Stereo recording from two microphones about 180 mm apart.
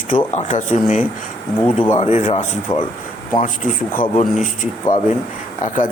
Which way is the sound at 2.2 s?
35° left (ahead or behind).